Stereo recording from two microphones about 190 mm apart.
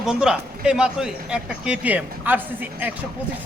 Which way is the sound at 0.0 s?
5° right (ahead or behind).